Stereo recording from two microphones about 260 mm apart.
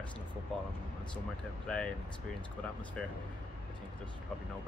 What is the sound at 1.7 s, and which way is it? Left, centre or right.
Speech, centre.